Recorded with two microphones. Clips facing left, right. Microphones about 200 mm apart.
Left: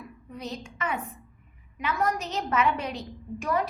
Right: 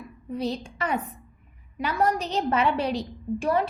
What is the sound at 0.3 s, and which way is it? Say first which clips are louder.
A woman's voice: right 8 dB; 30° right (ahead or behind).